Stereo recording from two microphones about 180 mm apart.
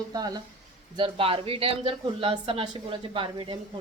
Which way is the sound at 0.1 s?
20° right (ahead or behind).